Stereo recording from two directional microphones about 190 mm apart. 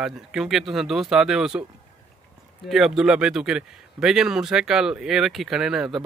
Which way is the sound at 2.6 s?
Centre (ahead or behind).